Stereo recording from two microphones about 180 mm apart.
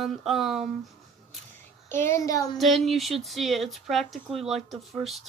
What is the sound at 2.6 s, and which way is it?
A woman's voice, centre (ahead or behind).